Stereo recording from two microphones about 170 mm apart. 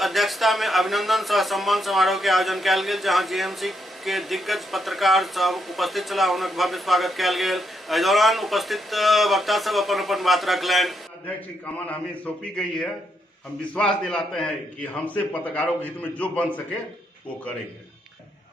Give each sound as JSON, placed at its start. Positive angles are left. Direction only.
{"t": 0.0, "sound": "a man's voice", "side_deg": 0}
{"t": 13.7, "sound": "a man's voice", "side_deg": 5}